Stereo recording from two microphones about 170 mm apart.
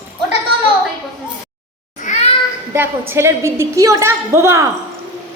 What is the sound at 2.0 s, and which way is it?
Children playing, 45° left (ahead or behind).